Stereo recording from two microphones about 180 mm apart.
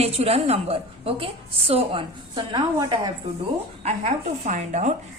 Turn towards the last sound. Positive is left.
turn(degrees=-40)  # may be behind; listen again after turning